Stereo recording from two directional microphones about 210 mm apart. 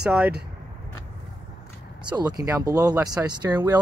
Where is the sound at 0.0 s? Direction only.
5° right (ahead or behind).